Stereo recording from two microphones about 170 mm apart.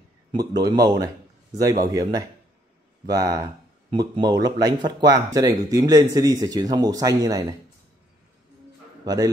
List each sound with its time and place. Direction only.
0.3 s a man's voice: 25° right (ahead or behind)
9.0 s a man's voice: 20° right (ahead or behind)